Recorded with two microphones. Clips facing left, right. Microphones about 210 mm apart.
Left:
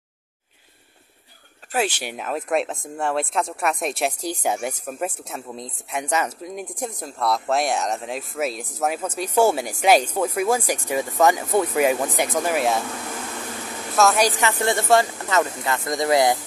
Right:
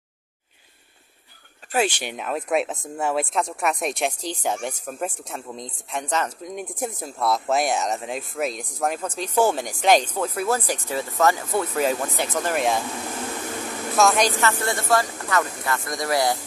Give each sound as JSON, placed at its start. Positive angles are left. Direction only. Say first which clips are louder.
{"t": 1.7, "sound": "speech", "louder": "right 1 dB", "side_deg": 5}
{"t": 13.9, "sound": "speech", "louder": "left 1 dB", "side_deg": 5}